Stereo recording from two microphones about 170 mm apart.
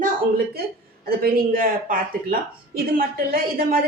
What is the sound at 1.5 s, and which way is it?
Speech, 55° right (ahead or behind).